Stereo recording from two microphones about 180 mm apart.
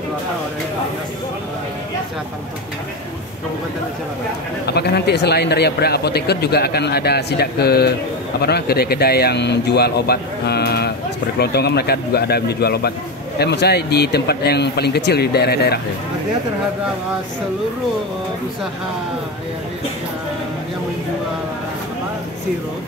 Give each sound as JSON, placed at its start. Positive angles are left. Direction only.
{"t": 4.6, "sound": "speech", "side_deg": 65}